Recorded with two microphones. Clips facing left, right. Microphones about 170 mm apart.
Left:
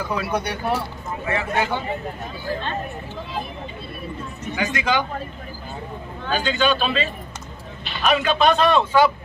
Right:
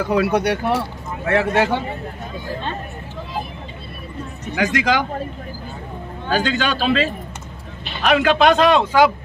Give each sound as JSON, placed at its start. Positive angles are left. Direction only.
{"t": 0.0, "sound": "speech", "side_deg": -75}
{"t": 4.6, "sound": "a man's voice", "side_deg": -90}
{"t": 6.6, "sound": "a man's voice", "side_deg": -90}